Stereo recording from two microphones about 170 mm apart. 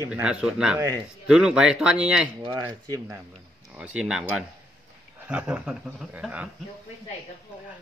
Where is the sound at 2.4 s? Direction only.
30° right (ahead or behind).